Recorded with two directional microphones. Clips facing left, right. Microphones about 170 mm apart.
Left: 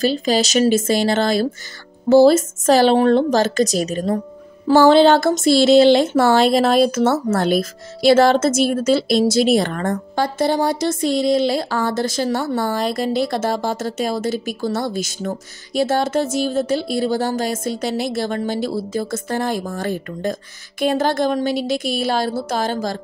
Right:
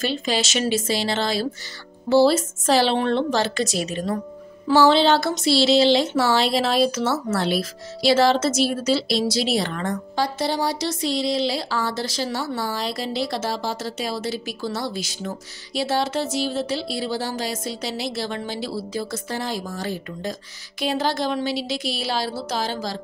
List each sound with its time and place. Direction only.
0.0 s speech: 40° left (ahead or behind)